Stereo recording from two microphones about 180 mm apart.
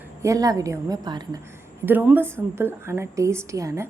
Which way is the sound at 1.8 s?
10° right (ahead or behind).